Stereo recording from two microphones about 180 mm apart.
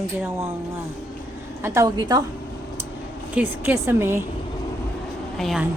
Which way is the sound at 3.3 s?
10° right (ahead or behind).